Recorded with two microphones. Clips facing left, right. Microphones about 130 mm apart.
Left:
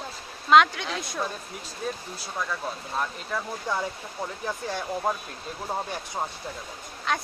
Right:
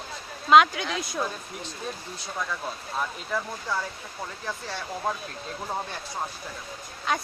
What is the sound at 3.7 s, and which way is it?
Speech, 15° left (ahead or behind).